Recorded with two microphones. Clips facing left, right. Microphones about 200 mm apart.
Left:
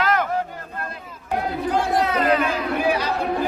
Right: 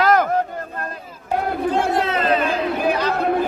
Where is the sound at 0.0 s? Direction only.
40° right (ahead or behind).